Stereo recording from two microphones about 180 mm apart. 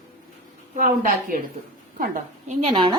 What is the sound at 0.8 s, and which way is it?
Speech, 50° right (ahead or behind).